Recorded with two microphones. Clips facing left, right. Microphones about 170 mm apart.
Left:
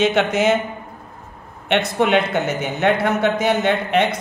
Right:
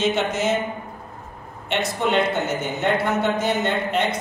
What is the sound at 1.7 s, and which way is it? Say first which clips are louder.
Speech: left 5 dB; 65° left (ahead or behind).